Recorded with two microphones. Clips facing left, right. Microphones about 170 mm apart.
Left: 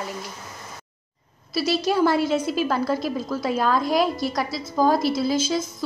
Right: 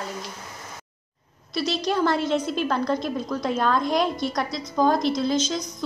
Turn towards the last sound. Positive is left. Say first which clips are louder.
# left 1 dB
turn(degrees=5)  # may be behind; listen again after turning